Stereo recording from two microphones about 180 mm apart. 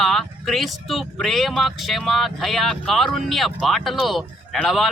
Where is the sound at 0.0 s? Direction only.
Centre (ahead or behind).